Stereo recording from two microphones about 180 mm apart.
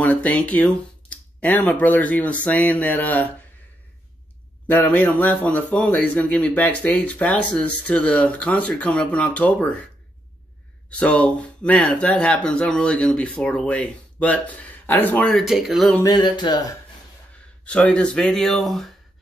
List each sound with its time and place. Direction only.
0.0 s speech: 10° left (ahead or behind)
4.6 s a man's voice: 10° left (ahead or behind)
10.9 s a man's voice: 5° left (ahead or behind)
16.0 s a sound: 25° left (ahead or behind)
17.6 s speech: 5° left (ahead or behind)